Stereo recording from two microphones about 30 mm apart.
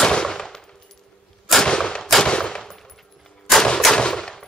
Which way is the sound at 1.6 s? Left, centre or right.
Left.